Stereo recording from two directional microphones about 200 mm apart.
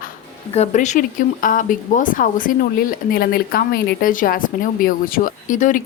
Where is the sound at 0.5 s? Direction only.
35° left (ahead or behind).